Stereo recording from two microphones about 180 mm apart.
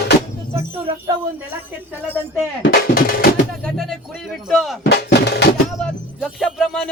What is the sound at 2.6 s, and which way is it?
Drum, 55° left (ahead or behind).